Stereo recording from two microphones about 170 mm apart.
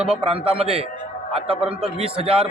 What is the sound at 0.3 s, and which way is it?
A man's voice, 35° right (ahead or behind).